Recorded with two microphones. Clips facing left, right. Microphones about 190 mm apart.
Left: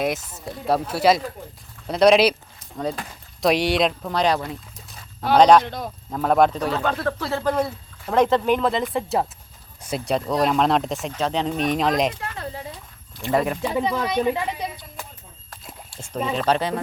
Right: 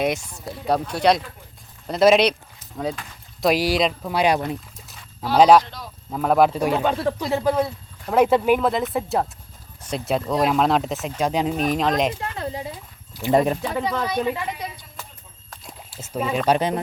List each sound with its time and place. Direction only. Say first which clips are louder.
0.0 s speech: right 1 dB; centre (ahead or behind); by 4.5 s 15° right (ahead or behind)
5.4 s speech: even; 5° right (ahead or behind)
5.6 s speech: left 8 dB; 50° left (ahead or behind)
6.1 s speech: right 1 dB; 5° right (ahead or behind)
7.5 s speech: right 1 dB; centre (ahead or behind)
12.2 s speech: right 3 dB; 25° right (ahead or behind)
14.1 s speech: left 2 dB; 20° left (ahead or behind)
15.4 s rowboat: right 1 dB; centre (ahead or behind); by 16.8 s 20° right (ahead or behind)